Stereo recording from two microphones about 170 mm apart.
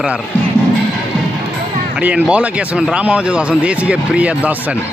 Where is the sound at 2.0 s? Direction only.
5° right (ahead or behind).